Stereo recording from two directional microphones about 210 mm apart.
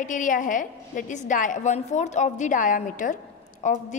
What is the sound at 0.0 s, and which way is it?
A woman's voice, 40° left (ahead or behind).